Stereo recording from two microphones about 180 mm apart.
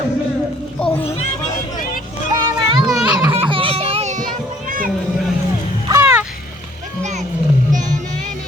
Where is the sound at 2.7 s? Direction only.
20° right (ahead or behind).